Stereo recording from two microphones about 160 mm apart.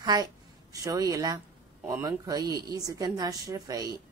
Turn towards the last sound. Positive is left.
turn(degrees=-25)  # may be behind; listen again after turning